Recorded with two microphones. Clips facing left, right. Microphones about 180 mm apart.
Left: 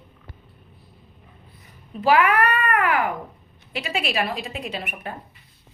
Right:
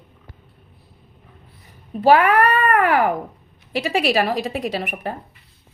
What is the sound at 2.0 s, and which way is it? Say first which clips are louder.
Speech: right 4 dB; 35° right (ahead or behind).